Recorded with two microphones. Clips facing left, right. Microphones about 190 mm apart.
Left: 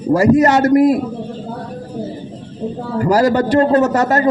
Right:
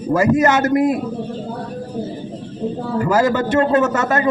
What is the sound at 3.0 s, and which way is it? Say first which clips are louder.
A man's voice: left 3 dB; 35° left (ahead or behind).